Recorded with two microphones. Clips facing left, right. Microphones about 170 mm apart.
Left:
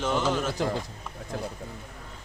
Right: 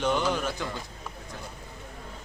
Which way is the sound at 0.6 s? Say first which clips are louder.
Left 7 dB; 40° left (ahead or behind).